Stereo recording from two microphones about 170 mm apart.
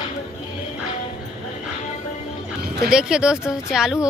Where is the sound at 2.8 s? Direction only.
5° right (ahead or behind).